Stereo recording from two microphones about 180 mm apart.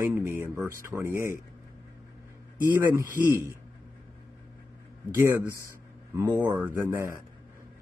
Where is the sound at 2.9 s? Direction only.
15° right (ahead or behind).